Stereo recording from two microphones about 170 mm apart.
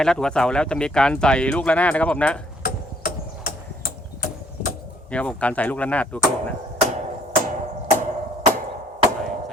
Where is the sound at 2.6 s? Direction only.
60° left (ahead or behind).